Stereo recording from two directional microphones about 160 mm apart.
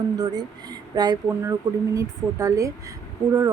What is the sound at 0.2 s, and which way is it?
Speech, 25° right (ahead or behind).